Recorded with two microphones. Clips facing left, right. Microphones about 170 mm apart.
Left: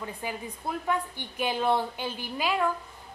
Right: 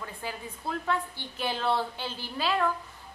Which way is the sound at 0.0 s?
15° left (ahead or behind).